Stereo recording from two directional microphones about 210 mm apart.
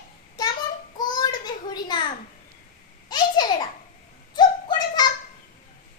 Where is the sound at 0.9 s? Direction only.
20° left (ahead or behind).